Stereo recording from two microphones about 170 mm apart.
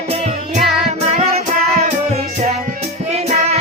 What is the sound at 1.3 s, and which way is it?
Music, 40° right (ahead or behind).